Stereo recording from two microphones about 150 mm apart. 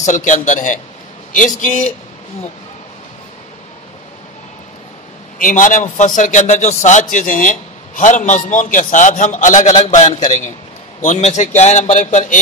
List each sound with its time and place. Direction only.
0.0 s a man's voice: 55° left (ahead or behind)
5.4 s a man's voice: 60° left (ahead or behind)